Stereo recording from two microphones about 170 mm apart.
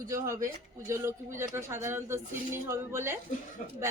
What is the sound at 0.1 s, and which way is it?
Speech, 20° right (ahead or behind).